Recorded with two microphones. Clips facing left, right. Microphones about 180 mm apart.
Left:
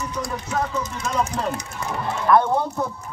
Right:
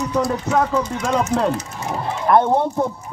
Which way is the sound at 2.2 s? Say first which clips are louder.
Right 3 dB; 25° right (ahead or behind).